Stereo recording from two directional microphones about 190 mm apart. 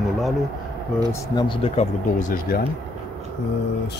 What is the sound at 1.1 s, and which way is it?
Speech, 25° left (ahead or behind).